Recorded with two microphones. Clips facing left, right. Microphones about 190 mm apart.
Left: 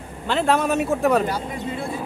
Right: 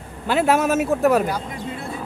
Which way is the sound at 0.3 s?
5° right (ahead or behind).